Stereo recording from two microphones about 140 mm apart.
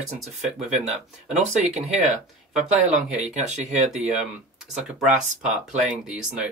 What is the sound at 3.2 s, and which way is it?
Speech, 55° right (ahead or behind).